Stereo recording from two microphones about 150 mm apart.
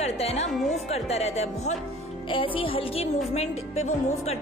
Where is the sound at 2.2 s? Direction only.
35° left (ahead or behind).